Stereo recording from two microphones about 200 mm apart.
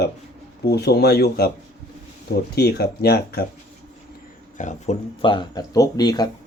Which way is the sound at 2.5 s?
55° left (ahead or behind).